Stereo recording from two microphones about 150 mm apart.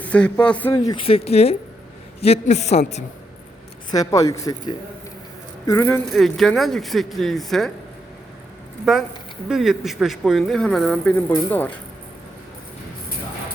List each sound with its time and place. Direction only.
0.0 s a man's voice: 10° left (ahead or behind)
0.9 s a woman's voice: 40° left (ahead or behind)
3.9 s speech: 25° left (ahead or behind)
5.9 s speech: centre (ahead or behind)
8.8 s speech: 5° right (ahead or behind); by 11.8 s 10° left (ahead or behind)